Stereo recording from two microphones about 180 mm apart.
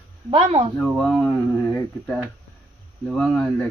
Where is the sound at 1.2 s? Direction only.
15° left (ahead or behind).